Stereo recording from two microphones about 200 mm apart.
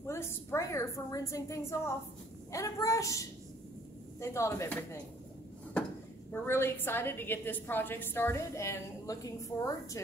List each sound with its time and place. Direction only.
0.0 s a woman's voice: 15° left (ahead or behind)
6.3 s a woman's voice: 10° left (ahead or behind)